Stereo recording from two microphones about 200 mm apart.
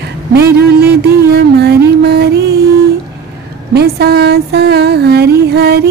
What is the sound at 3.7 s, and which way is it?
Speech, 55° right (ahead or behind).